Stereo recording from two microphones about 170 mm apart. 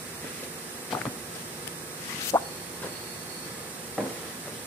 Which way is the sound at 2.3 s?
20° left (ahead or behind).